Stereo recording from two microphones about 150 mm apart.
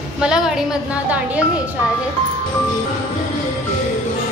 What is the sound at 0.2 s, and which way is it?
A woman's voice, 5° right (ahead or behind).